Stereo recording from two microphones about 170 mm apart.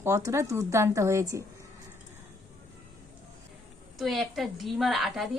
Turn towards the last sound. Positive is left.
turn(degrees=0)  # may be behind; listen again after turning